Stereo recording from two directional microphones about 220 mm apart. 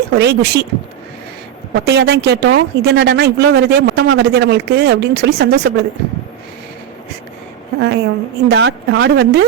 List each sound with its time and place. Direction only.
0.1 s speech: 50° right (ahead or behind)
1.8 s speech: 45° right (ahead or behind)
7.8 s speech: 50° right (ahead or behind)